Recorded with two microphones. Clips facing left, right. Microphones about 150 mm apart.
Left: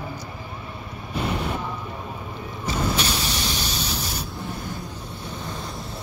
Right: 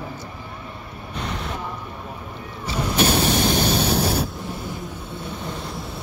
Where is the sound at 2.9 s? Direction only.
55° right (ahead or behind).